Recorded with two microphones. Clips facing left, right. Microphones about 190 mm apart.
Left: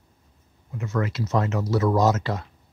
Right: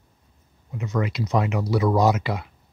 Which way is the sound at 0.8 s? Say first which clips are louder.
Right 1 dB; 15° right (ahead or behind).